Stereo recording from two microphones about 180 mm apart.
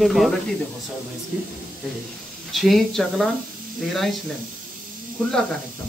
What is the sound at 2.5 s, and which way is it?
Speech, centre (ahead or behind).